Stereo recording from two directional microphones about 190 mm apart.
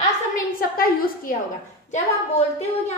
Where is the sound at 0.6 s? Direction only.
50° left (ahead or behind).